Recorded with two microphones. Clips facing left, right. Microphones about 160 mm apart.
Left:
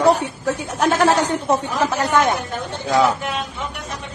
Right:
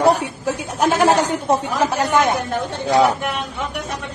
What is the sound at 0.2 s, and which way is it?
Speech, 10° right (ahead or behind).